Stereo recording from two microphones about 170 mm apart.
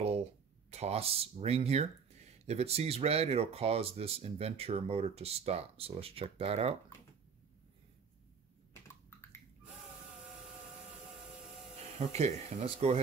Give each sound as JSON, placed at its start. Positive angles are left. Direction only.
{"t": 0.7, "sound": "speech", "side_deg": -40}
{"t": 12.1, "sound": "speech", "side_deg": -40}